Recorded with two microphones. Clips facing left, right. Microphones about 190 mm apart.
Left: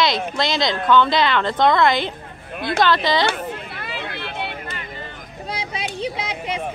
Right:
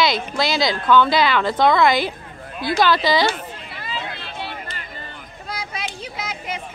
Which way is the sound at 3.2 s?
60° left (ahead or behind).